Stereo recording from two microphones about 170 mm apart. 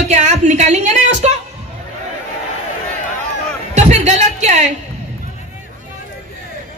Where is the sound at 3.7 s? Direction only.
40° right (ahead or behind).